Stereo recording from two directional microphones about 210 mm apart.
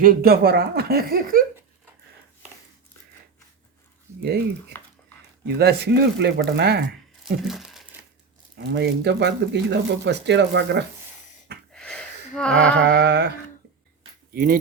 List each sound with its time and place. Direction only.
0.0 s speech: 45° right (ahead or behind)
4.2 s speech: 50° right (ahead or behind)
4.7 s a sound: 10° left (ahead or behind)
5.5 s speech: 50° right (ahead or behind)
7.4 s crumpling: centre (ahead or behind)
8.5 s speech: 55° right (ahead or behind)
11.7 s gasp: 5° left (ahead or behind)
12.9 s speech: 55° right (ahead or behind)
14.3 s speech: 45° right (ahead or behind)